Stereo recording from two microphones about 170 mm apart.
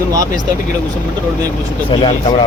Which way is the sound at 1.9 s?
30° left (ahead or behind).